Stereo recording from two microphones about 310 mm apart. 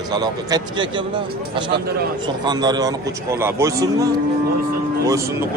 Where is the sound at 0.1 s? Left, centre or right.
Centre.